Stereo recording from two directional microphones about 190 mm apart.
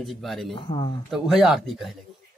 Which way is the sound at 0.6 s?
25° left (ahead or behind).